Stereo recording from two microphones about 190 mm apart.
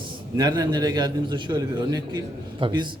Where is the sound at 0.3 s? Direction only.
20° right (ahead or behind).